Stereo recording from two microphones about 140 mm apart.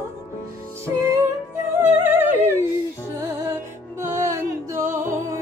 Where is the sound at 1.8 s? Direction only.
15° right (ahead or behind).